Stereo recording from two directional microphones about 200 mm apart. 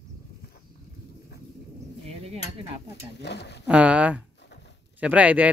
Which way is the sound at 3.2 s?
55° left (ahead or behind).